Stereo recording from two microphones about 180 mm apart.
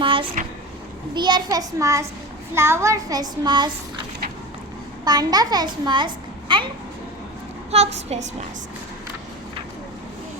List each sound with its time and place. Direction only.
0.0 s vehicle: 30° right (ahead or behind)
1.1 s a child's voice: 25° right (ahead or behind)
5.0 s a child's voice: 20° right (ahead or behind)
7.7 s a woman's voice: 35° right (ahead or behind)